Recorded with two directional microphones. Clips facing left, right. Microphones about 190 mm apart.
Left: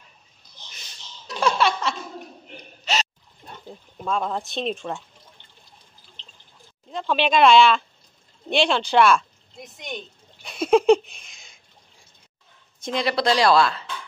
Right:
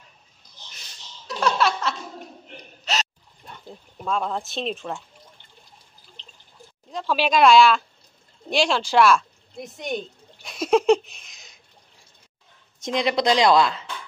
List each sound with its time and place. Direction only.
1.2 s laughter: centre (ahead or behind)
2.8 s gasp: centre (ahead or behind)
4.0 s speech: centre (ahead or behind)
6.9 s speech: centre (ahead or behind)
9.6 s a woman's voice: 50° right (ahead or behind)
9.9 s a sound: centre (ahead or behind)
12.8 s speech: 20° right (ahead or behind)